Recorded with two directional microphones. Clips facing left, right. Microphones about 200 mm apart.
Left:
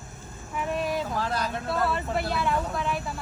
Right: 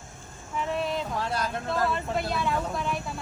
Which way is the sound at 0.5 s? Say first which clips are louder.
Left 1 dB; 10° left (ahead or behind).